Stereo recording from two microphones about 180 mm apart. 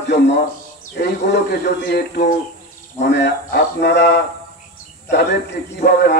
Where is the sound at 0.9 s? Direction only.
65° left (ahead or behind).